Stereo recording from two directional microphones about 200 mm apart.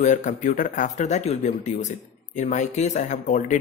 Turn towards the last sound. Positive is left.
turn(degrees=40)  # may be behind; listen again after turning